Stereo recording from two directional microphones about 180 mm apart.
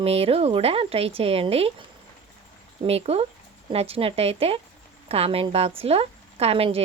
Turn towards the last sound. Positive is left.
turn(degrees=-35)  # may be behind; listen again after turning